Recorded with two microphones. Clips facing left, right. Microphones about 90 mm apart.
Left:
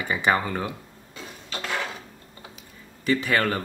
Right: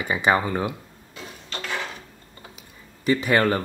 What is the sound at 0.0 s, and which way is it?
Speech, 15° right (ahead or behind).